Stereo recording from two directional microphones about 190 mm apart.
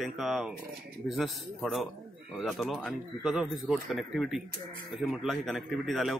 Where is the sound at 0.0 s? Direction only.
Centre (ahead or behind).